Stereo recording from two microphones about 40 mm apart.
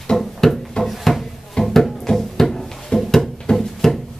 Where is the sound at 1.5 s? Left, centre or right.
Centre.